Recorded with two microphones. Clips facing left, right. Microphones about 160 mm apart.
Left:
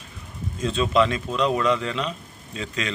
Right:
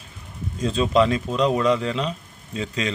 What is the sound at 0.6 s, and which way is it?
A man's voice, 35° right (ahead or behind).